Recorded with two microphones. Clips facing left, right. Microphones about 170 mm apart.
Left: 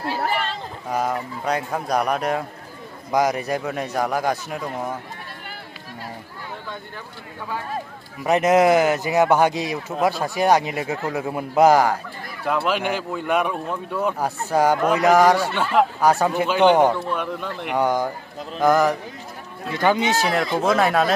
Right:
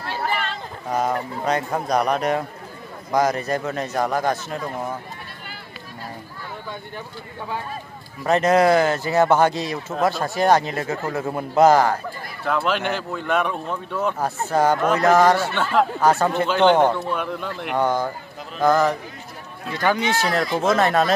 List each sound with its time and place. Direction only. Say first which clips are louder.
0.9 s speech: right 1 dB; 5° left (ahead or behind)
3.1 s speech: even; 15° left (ahead or behind)
8.2 s speech: even; 15° left (ahead or behind)
17.1 s speech: even; centre (ahead or behind)
17.7 s speech: left 1 dB; 15° left (ahead or behind)
20.2 s speech: right 2 dB; 5° left (ahead or behind)